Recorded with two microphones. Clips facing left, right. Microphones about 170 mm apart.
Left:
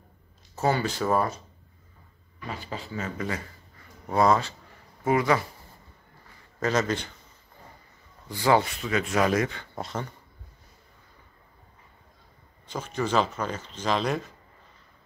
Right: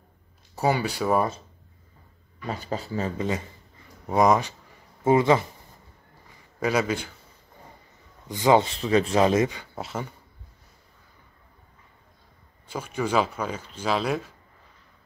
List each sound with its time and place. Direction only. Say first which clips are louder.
0.6 s speech: right 1 dB; 10° right (ahead or behind)
2.4 s speech: right 5 dB; 40° right (ahead or behind)
3.2 s speech: right 4 dB; 20° right (ahead or behind)
6.2 s a sound: right 1 dB; 10° right (ahead or behind)
8.3 s speech: right 3 dB; 20° right (ahead or behind)
9.8 s speech: right 1 dB; 5° right (ahead or behind)
12.6 s speech: right 1 dB; 10° right (ahead or behind)